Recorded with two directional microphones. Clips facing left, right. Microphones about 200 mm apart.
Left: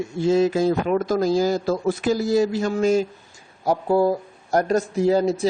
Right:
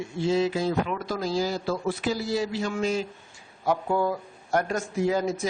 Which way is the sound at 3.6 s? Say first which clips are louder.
Left 6 dB; 35° left (ahead or behind).